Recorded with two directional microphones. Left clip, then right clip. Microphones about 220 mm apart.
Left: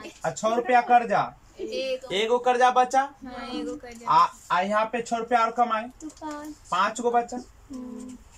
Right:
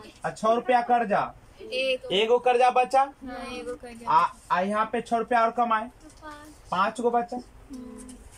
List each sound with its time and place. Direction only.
0.2 s speech: centre (ahead or behind)